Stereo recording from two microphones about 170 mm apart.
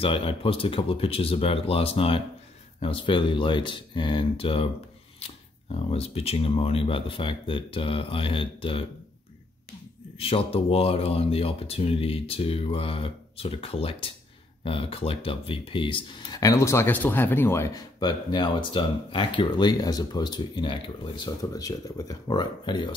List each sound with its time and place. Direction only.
0.0 s speech: 35° left (ahead or behind)
5.8 s speech: 35° left (ahead or behind)
10.1 s speech: 35° left (ahead or behind); by 17.8 s 15° left (ahead or behind)
17.9 s speech: 25° left (ahead or behind)